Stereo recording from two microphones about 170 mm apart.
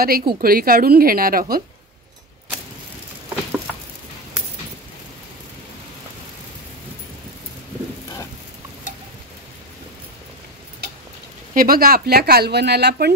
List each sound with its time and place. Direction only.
0.0 s a woman's voice: 60° right (ahead or behind)
11.5 s speech: 60° right (ahead or behind); by 13.1 s 75° right (ahead or behind)